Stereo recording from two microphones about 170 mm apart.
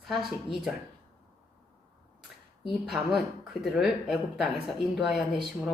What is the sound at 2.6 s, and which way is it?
Speech, centre (ahead or behind).